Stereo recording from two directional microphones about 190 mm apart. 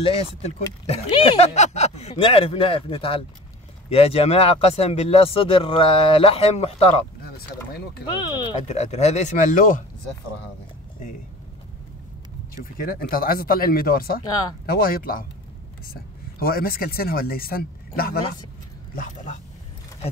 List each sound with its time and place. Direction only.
0.8 s speech: 35° left (ahead or behind)
7.2 s speech: 55° left (ahead or behind)
8.2 s speech: 25° left (ahead or behind); by 9.8 s 45° left (ahead or behind)
12.8 s speech: 50° left (ahead or behind)
16.3 s speech: 50° left (ahead or behind)
18.9 s speech: 40° left (ahead or behind)